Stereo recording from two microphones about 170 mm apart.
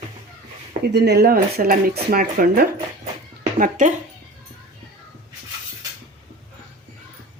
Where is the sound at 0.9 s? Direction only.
75° right (ahead or behind).